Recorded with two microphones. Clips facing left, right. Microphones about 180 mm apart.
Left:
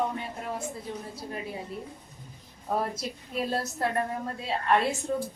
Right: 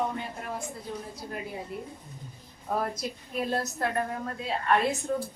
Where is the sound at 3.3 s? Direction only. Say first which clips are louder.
Even; 30° left (ahead or behind).